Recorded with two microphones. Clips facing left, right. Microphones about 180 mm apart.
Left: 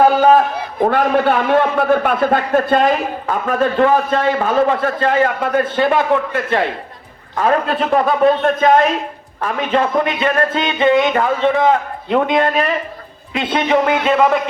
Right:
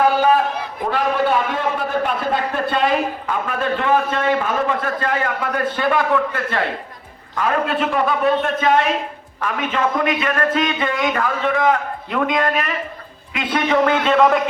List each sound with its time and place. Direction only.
0.8 s a man's voice: 55° left (ahead or behind); by 6.6 s 20° left (ahead or behind)
7.3 s a man's voice: 40° left (ahead or behind); by 14.3 s 5° left (ahead or behind)